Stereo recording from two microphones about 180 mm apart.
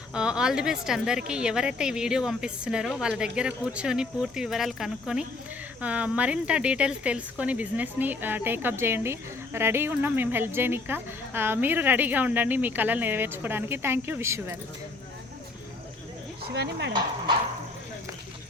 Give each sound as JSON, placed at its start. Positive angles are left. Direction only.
{"t": 0.1, "sound": "a woman's voice", "side_deg": -5}
{"t": 16.6, "sound": "speech", "side_deg": -75}